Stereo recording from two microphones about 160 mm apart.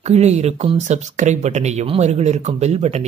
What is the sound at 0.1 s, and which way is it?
Speech, 45° right (ahead or behind).